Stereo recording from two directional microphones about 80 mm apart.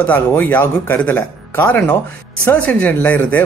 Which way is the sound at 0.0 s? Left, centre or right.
Left.